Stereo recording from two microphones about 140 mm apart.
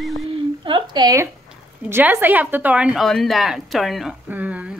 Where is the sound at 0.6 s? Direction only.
35° right (ahead or behind).